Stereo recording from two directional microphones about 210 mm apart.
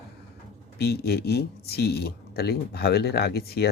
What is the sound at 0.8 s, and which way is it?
Speech, 50° left (ahead or behind).